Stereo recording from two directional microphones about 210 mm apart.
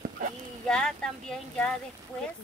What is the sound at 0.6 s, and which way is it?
Speech, 5° left (ahead or behind).